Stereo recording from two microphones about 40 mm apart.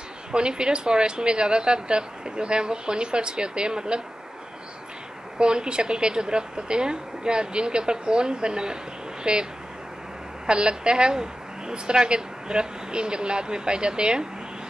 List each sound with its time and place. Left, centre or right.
0.3 s a woman's voice: right
5.4 s a woman's voice: right